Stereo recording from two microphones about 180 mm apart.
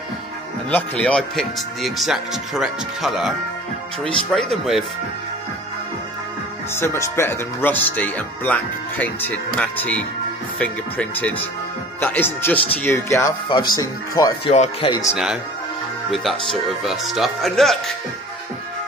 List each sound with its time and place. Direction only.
0.7 s speech: 5° left (ahead or behind)
6.7 s speech: 15° left (ahead or behind)
14.4 s speech: 35° left (ahead or behind)
16.1 s speech: centre (ahead or behind)